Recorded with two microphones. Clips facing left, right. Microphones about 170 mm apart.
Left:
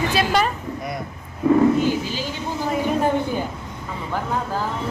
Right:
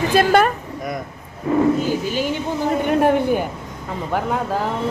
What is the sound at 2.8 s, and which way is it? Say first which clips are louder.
A woman's voice: right 4 dB; 65° right (ahead or behind).